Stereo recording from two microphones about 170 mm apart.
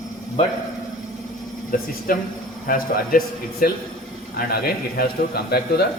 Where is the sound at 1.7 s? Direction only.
55° left (ahead or behind).